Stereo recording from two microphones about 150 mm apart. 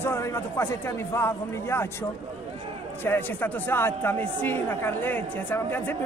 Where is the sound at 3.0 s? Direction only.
15° left (ahead or behind).